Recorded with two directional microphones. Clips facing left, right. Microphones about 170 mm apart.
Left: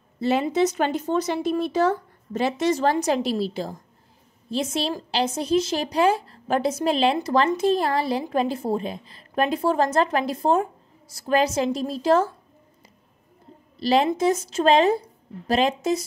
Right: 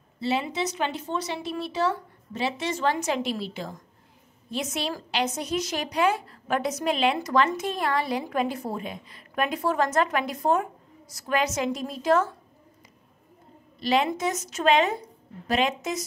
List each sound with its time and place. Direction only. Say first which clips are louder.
0.2 s a woman's voice: left 6 dB; 45° left (ahead or behind); by 12.3 s 30° left (ahead or behind)
13.7 s a woman's voice: left 4 dB; 35° left (ahead or behind)